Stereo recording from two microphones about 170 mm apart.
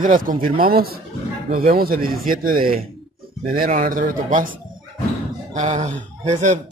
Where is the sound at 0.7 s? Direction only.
65° right (ahead or behind).